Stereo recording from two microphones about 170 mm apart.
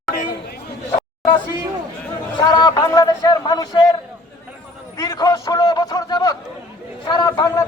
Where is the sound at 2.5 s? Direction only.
20° left (ahead or behind).